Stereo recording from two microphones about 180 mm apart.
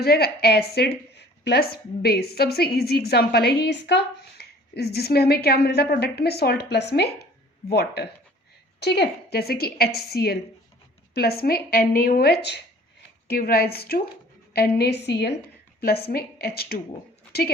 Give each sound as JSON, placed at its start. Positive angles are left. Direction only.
{"t": 0.0, "sound": "a woman's voice", "side_deg": 60}